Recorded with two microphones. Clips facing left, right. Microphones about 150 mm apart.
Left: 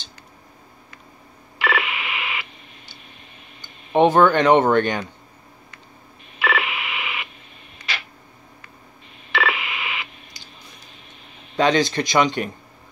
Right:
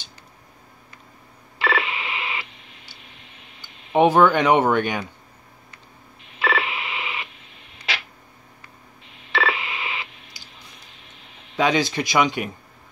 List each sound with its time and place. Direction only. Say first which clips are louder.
1.6 s telephone dialing: even; 30° right (ahead or behind)
3.6 s speech: left 1 dB; 10° right (ahead or behind)
6.4 s telephone dialing: even; 30° right (ahead or behind)
7.9 s a sound: right 2 dB; 80° right
9.3 s telephone dialing: even; 30° right (ahead or behind)
11.5 s speech: left 2 dB; 5° right (ahead or behind)